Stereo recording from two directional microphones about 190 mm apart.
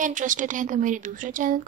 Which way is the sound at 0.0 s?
40° right (ahead or behind).